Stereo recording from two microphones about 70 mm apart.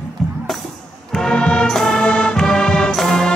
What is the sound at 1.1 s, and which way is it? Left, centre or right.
Music, centre.